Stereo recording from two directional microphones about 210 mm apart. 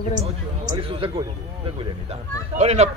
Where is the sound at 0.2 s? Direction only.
25° right (ahead or behind).